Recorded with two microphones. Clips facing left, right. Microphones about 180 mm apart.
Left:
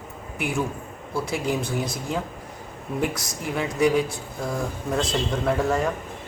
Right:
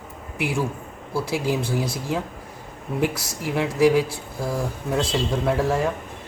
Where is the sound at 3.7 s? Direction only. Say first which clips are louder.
Right 3 dB; 5° right (ahead or behind).